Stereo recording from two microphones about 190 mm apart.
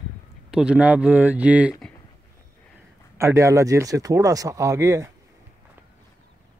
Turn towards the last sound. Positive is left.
turn(degrees=-15)  # may be behind; listen again after turning